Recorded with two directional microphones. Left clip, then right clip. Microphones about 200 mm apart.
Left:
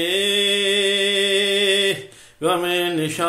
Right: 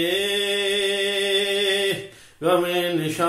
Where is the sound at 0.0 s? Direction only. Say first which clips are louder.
Left 3 dB; 35° left (ahead or behind).